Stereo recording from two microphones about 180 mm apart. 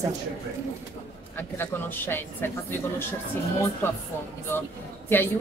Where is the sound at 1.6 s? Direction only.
10° left (ahead or behind).